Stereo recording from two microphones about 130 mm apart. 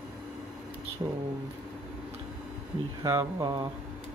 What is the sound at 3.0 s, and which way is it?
Speech, 25° right (ahead or behind).